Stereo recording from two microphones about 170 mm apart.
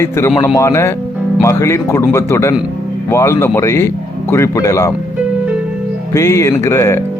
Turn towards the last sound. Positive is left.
turn(degrees=15)  # may be behind; listen again after turning